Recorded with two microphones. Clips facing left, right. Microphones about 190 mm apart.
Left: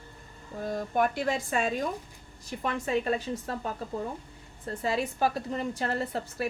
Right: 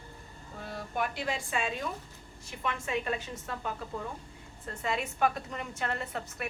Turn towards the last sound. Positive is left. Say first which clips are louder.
# left 6 dB
turn(degrees=35)  # may be behind; listen again after turning